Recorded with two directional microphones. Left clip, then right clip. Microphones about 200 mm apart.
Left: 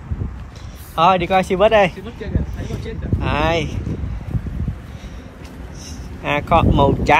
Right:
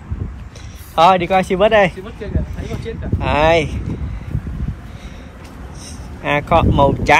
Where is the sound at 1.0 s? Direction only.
15° left (ahead or behind).